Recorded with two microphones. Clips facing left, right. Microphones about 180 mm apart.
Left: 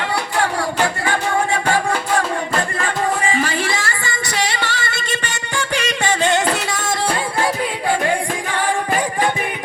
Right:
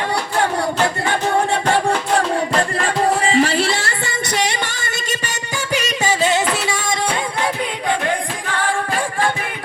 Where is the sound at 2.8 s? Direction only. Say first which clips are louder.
Right 2 dB; 30° right (ahead or behind).